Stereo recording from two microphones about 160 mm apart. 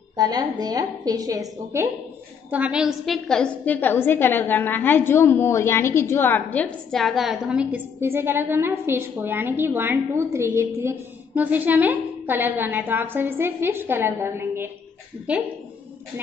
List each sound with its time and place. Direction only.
0.1 s a woman's voice: 25° right (ahead or behind)
2.5 s a woman's voice: 5° right (ahead or behind)